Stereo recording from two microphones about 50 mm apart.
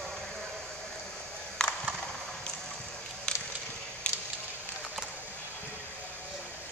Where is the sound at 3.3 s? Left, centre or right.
Centre.